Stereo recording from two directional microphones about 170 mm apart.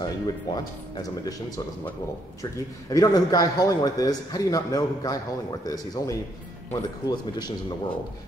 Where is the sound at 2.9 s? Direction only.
20° left (ahead or behind).